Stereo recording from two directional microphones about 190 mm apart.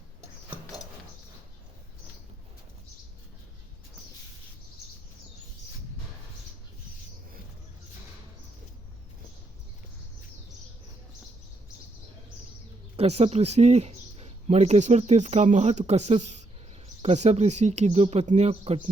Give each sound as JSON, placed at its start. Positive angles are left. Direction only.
{"t": 13.0, "sound": "speech", "side_deg": -35}